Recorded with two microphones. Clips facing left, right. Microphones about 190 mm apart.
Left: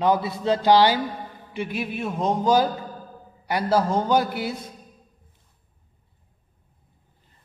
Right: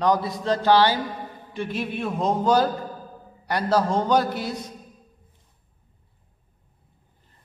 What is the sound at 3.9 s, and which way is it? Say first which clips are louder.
Speech: even; 5° left (ahead or behind).